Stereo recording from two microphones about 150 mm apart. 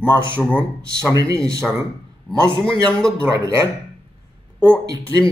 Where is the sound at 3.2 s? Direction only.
20° right (ahead or behind).